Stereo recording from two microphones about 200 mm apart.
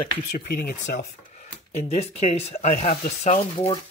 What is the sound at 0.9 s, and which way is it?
Speech, 50° left (ahead or behind).